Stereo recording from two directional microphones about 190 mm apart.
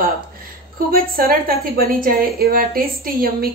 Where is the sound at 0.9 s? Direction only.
50° right (ahead or behind).